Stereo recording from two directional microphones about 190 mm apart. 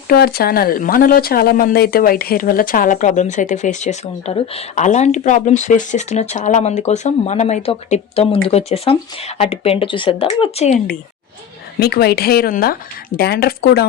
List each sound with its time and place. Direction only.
0.1 s speech: 55° left (ahead or behind); by 10.8 s 35° left (ahead or behind)
11.8 s speech: 55° left (ahead or behind)